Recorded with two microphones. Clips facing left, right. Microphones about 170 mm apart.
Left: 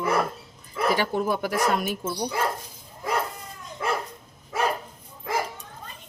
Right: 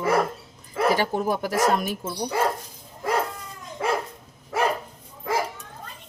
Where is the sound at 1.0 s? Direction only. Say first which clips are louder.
Right 1 dB; 40° right (ahead or behind).